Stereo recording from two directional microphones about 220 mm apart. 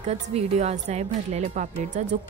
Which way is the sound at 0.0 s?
30° right (ahead or behind).